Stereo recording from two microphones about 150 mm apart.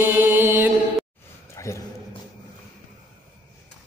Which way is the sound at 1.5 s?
20° left (ahead or behind).